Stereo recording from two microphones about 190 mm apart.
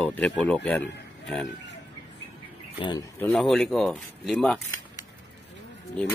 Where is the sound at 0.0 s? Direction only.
5° left (ahead or behind).